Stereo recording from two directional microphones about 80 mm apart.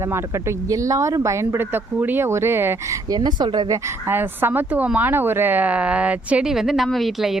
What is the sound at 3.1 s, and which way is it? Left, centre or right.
Speech, right.